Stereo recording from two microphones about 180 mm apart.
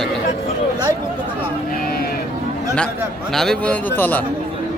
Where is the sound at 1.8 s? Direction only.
55° left (ahead or behind).